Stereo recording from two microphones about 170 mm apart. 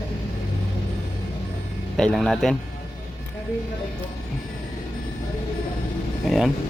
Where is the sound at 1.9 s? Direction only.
5° left (ahead or behind).